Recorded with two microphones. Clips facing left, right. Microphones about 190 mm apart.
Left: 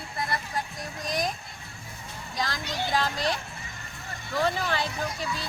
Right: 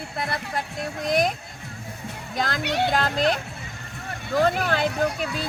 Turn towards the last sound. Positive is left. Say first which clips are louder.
# right 7 dB
turn(degrees=-60)  # may be behind; listen again after turning